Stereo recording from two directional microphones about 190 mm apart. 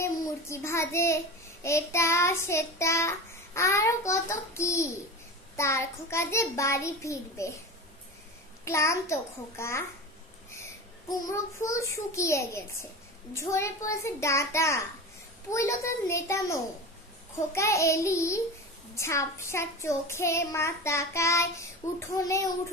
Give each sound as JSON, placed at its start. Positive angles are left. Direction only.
{"t": 0.0, "sound": "child singing", "side_deg": 15}
{"t": 8.6, "sound": "child singing", "side_deg": 15}
{"t": 10.6, "sound": "a child's voice", "side_deg": 15}
{"t": 13.3, "sound": "child singing", "side_deg": 15}